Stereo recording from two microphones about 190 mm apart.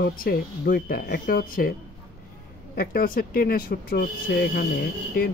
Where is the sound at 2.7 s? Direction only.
50° left (ahead or behind).